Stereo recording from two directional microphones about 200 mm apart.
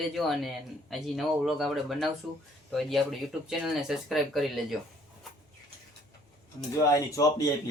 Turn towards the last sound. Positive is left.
turn(degrees=15)  # may be behind; listen again after turning